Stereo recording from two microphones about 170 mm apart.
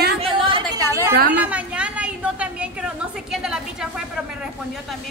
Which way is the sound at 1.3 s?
10° right (ahead or behind).